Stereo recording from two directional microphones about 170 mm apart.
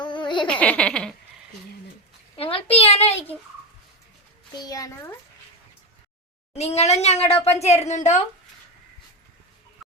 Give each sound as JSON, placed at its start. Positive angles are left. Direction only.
{"t": 0.0, "sound": "a sound", "side_deg": 25}
{"t": 0.4, "sound": "speech", "side_deg": 10}
{"t": 2.3, "sound": "speech", "side_deg": 35}
{"t": 4.5, "sound": "a child's voice", "side_deg": 20}
{"t": 6.5, "sound": "speech", "side_deg": 40}